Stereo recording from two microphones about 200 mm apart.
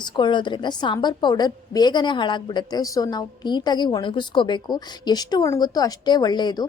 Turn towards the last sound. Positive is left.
turn(degrees=20)  # may be behind; listen again after turning